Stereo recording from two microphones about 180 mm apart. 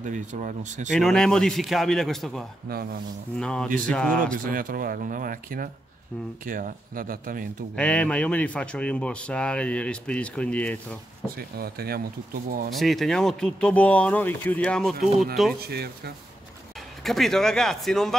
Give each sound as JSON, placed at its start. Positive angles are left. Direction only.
{"t": 0.0, "sound": "speech", "side_deg": -45}
{"t": 0.8, "sound": "speech", "side_deg": 5}
{"t": 4.5, "sound": "speech", "side_deg": -50}
{"t": 7.7, "sound": "speech", "side_deg": 5}
{"t": 11.3, "sound": "speech", "side_deg": -60}
{"t": 12.7, "sound": "speech", "side_deg": 0}
{"t": 15.6, "sound": "speech", "side_deg": -60}
{"t": 17.0, "sound": "speech", "side_deg": 0}